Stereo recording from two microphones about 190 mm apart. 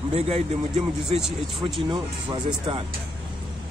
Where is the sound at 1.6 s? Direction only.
25° right (ahead or behind).